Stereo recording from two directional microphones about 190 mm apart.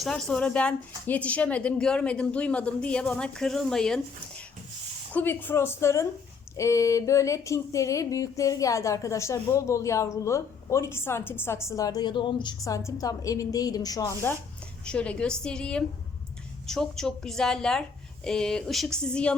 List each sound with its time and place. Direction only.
0.0 s speech: 5° left (ahead or behind)
5.1 s a sound: 10° left (ahead or behind)
11.7 s a woman's voice: 20° left (ahead or behind)